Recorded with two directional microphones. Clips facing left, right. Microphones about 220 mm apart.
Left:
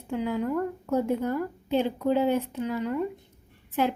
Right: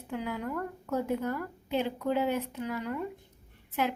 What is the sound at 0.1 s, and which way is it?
A woman's voice, 25° left (ahead or behind).